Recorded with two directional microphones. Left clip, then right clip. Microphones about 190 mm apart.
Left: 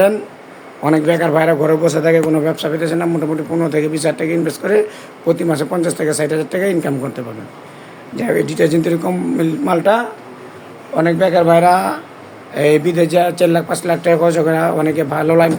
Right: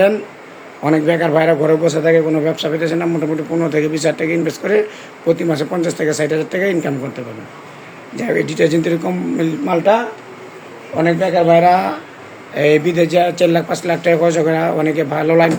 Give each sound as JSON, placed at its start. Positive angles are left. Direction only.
{"t": 0.8, "sound": "a man's voice", "side_deg": 5}
{"t": 8.1, "sound": "a man's voice", "side_deg": 10}